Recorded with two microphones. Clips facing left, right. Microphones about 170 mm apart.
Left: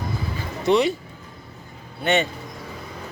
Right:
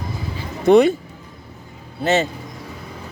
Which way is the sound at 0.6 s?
55° right (ahead or behind).